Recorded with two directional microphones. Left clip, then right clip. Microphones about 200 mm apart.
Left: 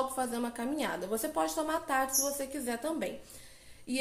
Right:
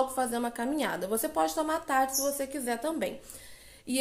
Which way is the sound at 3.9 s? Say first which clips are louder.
Right 3 dB; 25° right (ahead or behind).